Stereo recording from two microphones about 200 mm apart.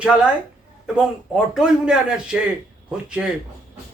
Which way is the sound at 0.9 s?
5° right (ahead or behind).